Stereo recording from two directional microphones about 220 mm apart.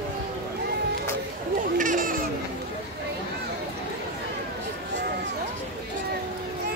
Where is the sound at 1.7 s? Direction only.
35° right (ahead or behind).